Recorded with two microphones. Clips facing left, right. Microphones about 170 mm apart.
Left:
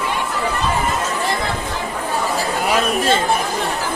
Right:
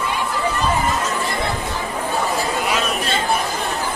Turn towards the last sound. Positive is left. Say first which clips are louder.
# left 5 dB
turn(degrees=45)  # may be behind; listen again after turning